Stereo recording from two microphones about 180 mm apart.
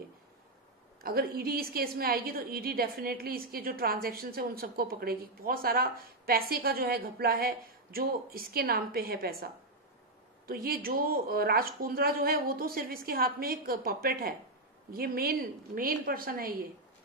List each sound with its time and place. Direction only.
1.0 s a woman's voice: 55° right (ahead or behind)